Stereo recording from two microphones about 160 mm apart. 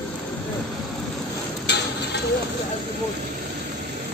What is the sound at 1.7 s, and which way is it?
Mechanisms, 90° left.